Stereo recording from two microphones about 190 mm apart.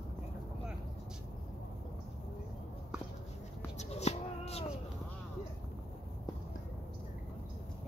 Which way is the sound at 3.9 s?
35° left (ahead or behind).